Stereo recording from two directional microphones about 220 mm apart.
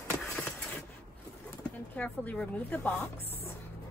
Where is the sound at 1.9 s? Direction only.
5° left (ahead or behind).